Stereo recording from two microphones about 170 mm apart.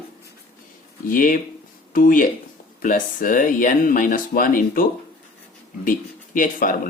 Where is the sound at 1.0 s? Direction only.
50° left (ahead or behind).